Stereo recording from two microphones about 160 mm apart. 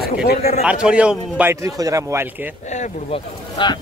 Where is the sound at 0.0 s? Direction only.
70° left (ahead or behind).